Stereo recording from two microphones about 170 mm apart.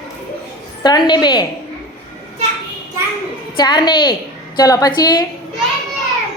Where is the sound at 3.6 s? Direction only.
25° left (ahead or behind).